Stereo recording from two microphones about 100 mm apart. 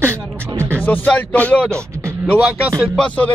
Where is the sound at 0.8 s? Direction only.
15° left (ahead or behind).